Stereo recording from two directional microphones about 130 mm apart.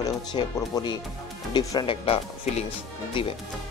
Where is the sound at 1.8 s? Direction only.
45° left (ahead or behind).